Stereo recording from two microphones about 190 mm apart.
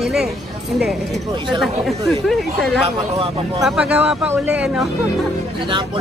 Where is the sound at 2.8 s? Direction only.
30° right (ahead or behind).